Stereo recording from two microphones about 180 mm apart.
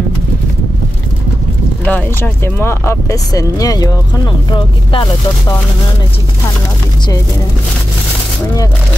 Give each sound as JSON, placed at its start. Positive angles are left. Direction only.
{"t": 1.9, "sound": "speech", "side_deg": 10}